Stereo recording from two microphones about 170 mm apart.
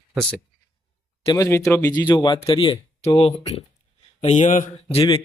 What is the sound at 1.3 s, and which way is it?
Speech, 15° left (ahead or behind).